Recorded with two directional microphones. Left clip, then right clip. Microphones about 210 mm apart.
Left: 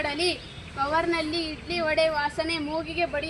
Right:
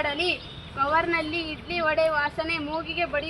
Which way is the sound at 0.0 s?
25° left (ahead or behind).